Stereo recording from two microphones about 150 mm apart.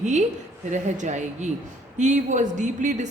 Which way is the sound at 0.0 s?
50° right (ahead or behind).